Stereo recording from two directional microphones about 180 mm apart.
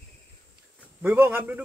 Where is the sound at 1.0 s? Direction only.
10° right (ahead or behind).